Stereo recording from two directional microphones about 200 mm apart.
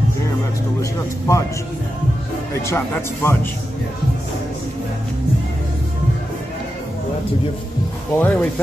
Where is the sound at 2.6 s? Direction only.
10° left (ahead or behind).